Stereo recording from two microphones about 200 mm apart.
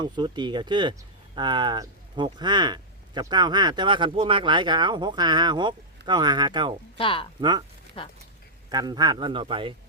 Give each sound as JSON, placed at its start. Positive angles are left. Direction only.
{"t": 0.0, "sound": "speech", "side_deg": -20}
{"t": 6.9, "sound": "speech", "side_deg": 25}
{"t": 8.7, "sound": "speech", "side_deg": -20}